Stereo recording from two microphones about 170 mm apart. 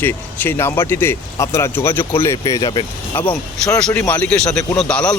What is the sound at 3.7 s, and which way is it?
Speech, 5° left (ahead or behind).